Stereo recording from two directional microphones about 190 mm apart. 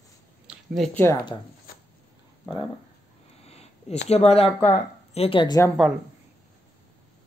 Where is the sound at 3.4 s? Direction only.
35° left (ahead or behind).